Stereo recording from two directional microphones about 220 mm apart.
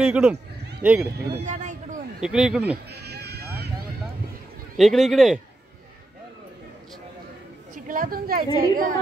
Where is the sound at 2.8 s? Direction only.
50° right (ahead or behind).